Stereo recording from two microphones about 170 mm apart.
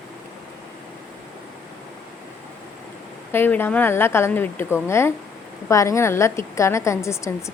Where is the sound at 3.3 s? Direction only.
10° left (ahead or behind).